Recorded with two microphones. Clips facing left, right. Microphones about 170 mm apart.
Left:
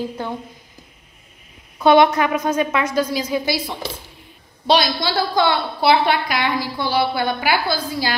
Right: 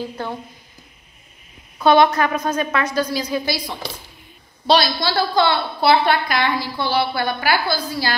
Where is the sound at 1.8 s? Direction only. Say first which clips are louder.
Left 1 dB; 15° left (ahead or behind).